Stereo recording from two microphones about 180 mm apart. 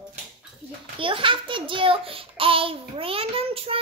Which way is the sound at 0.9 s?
30° right (ahead or behind).